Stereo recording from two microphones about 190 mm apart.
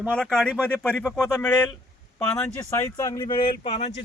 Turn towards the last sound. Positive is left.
turn(degrees=30)  # may be behind; listen again after turning